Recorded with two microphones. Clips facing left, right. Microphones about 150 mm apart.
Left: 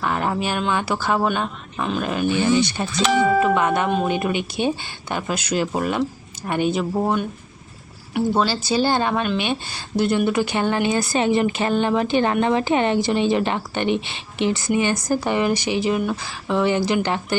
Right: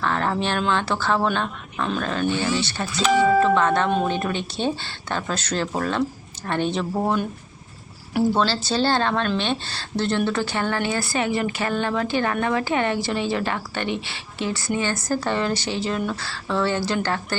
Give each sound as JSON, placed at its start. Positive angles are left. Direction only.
{"t": 0.0, "sound": "a woman's voice", "side_deg": 10}
{"t": 8.4, "sound": "a woman's voice", "side_deg": 10}